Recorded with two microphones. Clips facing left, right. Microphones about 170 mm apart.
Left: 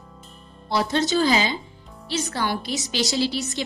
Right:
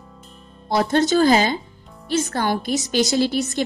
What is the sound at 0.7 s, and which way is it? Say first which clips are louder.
A woman's voice: right 4 dB; 50° right (ahead or behind).